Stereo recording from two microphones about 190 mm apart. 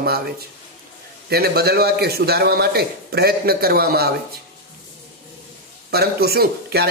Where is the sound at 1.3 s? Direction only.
55° right (ahead or behind).